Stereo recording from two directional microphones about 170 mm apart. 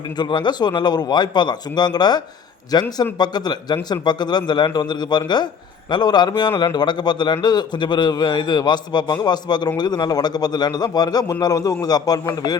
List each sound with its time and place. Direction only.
0.2 s a man's voice: 25° left (ahead or behind)